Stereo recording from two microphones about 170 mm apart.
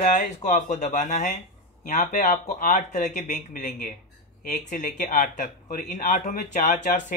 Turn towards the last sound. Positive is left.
turn(degrees=50)  # may be behind; listen again after turning